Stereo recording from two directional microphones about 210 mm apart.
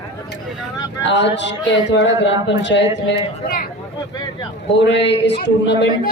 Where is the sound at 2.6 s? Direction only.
55° left (ahead or behind).